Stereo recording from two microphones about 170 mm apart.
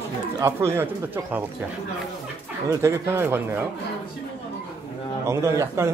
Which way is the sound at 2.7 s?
15° right (ahead or behind).